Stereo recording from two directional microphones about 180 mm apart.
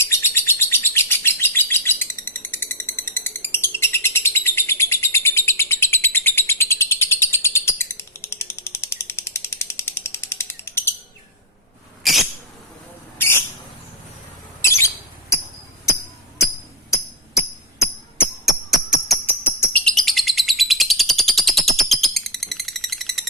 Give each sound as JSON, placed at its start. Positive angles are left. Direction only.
{"t": 0.0, "sound": "bird", "side_deg": 15}
{"t": 12.0, "sound": "a sound", "side_deg": 0}
{"t": 13.1, "sound": "bird", "side_deg": 15}
{"t": 14.6, "sound": "bird", "side_deg": 15}
{"t": 18.4, "sound": "music", "side_deg": 0}
{"t": 19.2, "sound": "bird", "side_deg": 10}